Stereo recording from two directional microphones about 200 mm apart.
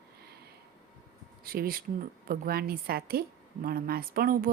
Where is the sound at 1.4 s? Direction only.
50° right (ahead or behind).